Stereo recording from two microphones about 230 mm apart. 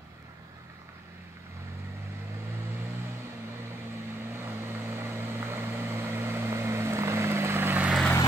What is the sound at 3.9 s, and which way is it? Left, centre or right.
Vehicle, centre.